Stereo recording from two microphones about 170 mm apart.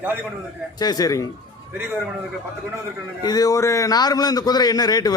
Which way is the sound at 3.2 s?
25° left (ahead or behind).